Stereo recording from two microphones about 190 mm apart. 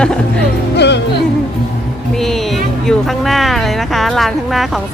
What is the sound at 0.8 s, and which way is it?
Music, 65° left (ahead or behind).